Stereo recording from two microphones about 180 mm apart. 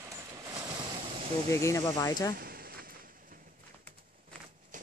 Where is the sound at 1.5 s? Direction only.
15° left (ahead or behind).